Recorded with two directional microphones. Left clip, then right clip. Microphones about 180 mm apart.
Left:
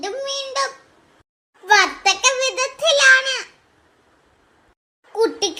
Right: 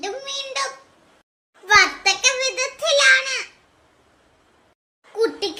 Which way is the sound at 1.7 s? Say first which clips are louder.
Even; 30° left (ahead or behind).